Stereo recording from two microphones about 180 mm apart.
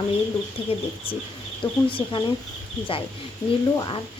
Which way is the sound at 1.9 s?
30° left (ahead or behind).